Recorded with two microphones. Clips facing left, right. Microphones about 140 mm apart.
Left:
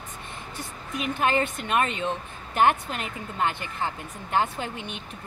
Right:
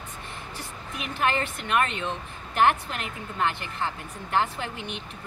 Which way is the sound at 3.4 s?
15° left (ahead or behind).